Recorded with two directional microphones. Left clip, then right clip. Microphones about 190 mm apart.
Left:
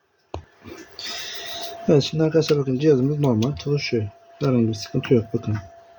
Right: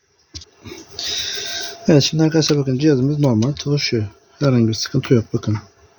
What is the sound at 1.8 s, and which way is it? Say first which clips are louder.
Speech: right 4 dB; 50° right (ahead or behind).